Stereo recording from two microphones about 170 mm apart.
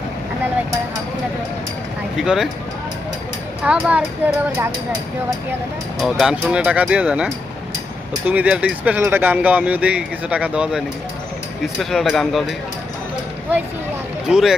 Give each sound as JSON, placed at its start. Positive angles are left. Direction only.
{"t": 2.1, "sound": "speech", "side_deg": 0}
{"t": 3.6, "sound": "speech", "side_deg": -5}
{"t": 6.0, "sound": "speech", "side_deg": 0}
{"t": 14.3, "sound": "speech", "side_deg": -5}